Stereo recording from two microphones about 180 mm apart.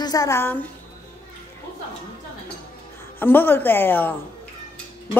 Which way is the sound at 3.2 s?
10° left (ahead or behind).